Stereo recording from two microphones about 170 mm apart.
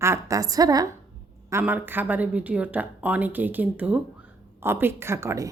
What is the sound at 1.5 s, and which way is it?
A woman's voice, 10° right (ahead or behind).